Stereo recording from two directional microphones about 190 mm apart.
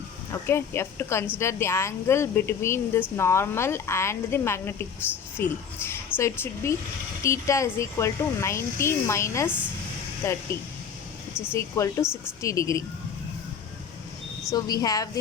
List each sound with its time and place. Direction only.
0.4 s speech: 15° left (ahead or behind)
11.5 s speech: 15° left (ahead or behind)
14.5 s a woman's voice: 20° left (ahead or behind)